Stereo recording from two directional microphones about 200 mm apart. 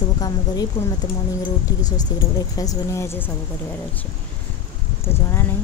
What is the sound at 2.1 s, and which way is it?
A woman's voice, 20° left (ahead or behind).